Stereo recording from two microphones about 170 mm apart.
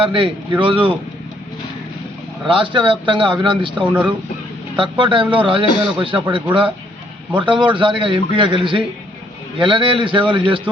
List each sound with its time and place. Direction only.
0.0 s a man's voice: 30° right (ahead or behind)
2.5 s a man's voice: 30° right (ahead or behind)
3.8 s speech: 10° right (ahead or behind)
4.8 s a man's voice: 30° right (ahead or behind)
7.3 s a man's voice: 30° right (ahead or behind)